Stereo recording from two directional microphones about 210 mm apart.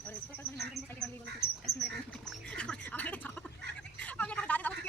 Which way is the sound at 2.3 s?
5° left (ahead or behind).